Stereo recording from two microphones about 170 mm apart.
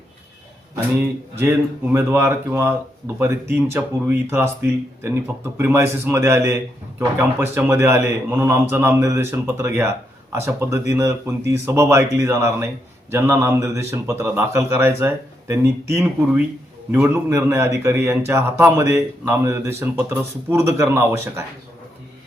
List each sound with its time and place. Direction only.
1.4 s speech: 15° right (ahead or behind)